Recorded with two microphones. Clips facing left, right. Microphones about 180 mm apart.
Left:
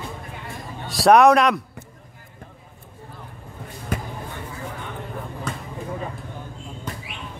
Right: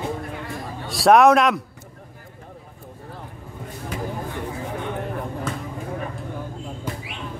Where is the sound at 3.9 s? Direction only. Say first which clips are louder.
Left 1 dB; 50° left (ahead or behind).